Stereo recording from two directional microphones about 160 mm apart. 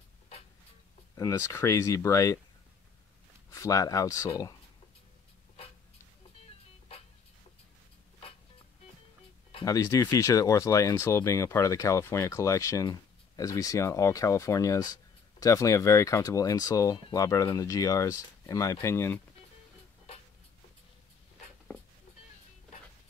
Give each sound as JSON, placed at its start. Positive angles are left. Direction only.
{"t": 1.1, "sound": "speech", "side_deg": 20}
{"t": 3.4, "sound": "speech", "side_deg": 20}
{"t": 9.7, "sound": "speech", "side_deg": 20}